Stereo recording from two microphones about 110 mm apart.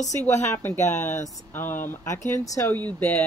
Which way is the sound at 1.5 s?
20° left (ahead or behind).